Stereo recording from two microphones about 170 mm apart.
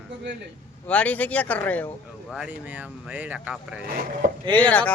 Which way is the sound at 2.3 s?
5° right (ahead or behind).